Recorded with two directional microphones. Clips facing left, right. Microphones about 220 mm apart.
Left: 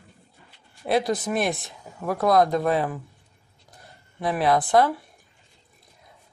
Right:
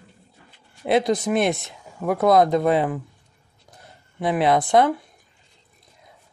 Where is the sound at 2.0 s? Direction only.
20° right (ahead or behind).